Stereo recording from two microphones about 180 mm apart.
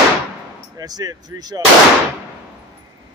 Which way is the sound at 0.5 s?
20° right (ahead or behind).